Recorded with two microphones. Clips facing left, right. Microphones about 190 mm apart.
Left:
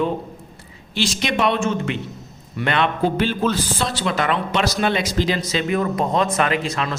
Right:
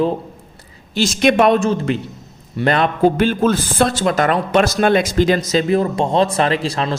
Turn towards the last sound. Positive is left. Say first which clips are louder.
# right 4 dB
turn(degrees=-35)  # may be behind; listen again after turning